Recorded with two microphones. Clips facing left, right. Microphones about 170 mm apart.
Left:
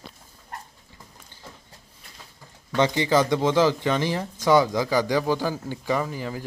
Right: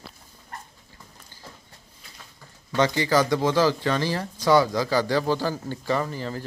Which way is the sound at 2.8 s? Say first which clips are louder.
Left 1 dB; 20° left (ahead or behind).